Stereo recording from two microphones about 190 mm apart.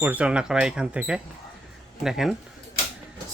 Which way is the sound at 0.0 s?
10° right (ahead or behind).